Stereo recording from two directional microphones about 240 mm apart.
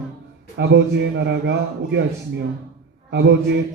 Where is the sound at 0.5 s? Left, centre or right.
Right.